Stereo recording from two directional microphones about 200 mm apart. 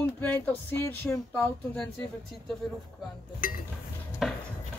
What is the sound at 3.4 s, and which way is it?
Speech, 45° left (ahead or behind).